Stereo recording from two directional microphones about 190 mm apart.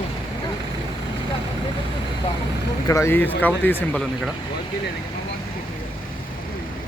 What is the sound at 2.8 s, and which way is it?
Speech, 15° left (ahead or behind).